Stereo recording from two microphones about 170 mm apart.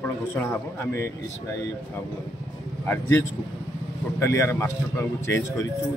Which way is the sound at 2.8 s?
15° left (ahead or behind).